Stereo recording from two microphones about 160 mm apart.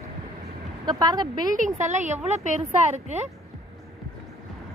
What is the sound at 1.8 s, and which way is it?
A woman's voice, 50° right (ahead or behind).